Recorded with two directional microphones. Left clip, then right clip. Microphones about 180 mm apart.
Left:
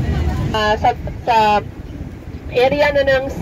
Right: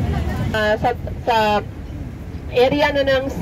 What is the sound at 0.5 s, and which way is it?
Speech, 20° right (ahead or behind).